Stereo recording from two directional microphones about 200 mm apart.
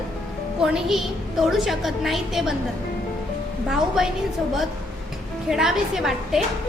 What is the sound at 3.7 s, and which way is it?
Speech, centre (ahead or behind).